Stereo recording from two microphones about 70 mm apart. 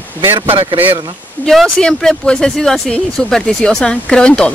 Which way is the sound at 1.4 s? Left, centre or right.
Centre.